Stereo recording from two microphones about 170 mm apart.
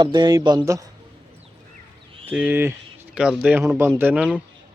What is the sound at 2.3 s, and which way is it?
Speech, 10° right (ahead or behind).